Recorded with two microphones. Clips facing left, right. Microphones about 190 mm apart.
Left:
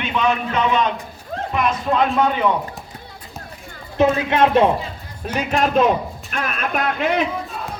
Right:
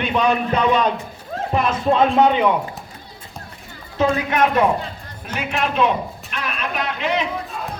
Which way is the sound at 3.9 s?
20° left (ahead or behind).